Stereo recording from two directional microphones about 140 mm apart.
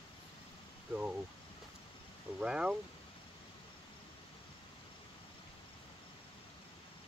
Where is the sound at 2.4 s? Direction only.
5° right (ahead or behind).